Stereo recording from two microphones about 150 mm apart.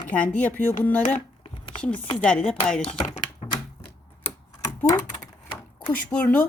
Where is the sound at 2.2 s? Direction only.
5° left (ahead or behind).